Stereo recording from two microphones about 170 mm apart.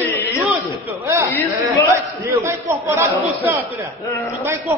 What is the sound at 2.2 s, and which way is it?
A man's voice, 15° right (ahead or behind).